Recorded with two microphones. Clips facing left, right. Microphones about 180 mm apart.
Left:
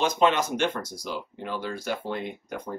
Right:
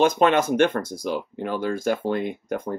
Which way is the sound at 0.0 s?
50° right (ahead or behind).